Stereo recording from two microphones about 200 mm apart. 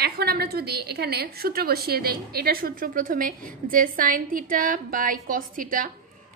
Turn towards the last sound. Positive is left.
turn(degrees=-45)  # may be behind; listen again after turning